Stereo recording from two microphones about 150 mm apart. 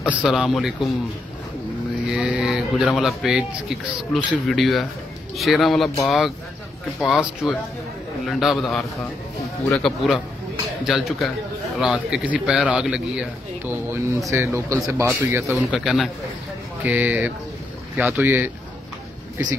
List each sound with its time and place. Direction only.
0.2 s speech: 5° right (ahead or behind)
2.0 s a man's voice: 5° right (ahead or behind)
13.7 s a man's voice: 15° right (ahead or behind)
15.5 s a man's voice: centre (ahead or behind)